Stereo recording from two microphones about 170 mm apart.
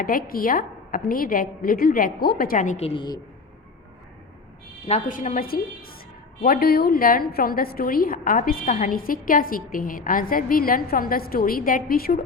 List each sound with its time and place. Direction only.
0.0 s a woman's voice: 55° left (ahead or behind); by 3.2 s 30° left (ahead or behind)
4.9 s a woman's voice: 45° left (ahead or behind)